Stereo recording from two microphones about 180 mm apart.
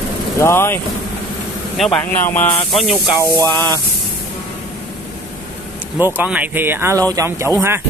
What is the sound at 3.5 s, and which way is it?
Speech, 20° right (ahead or behind).